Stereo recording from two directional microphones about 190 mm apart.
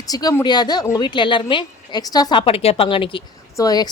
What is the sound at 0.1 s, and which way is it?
A woman's voice, 20° left (ahead or behind).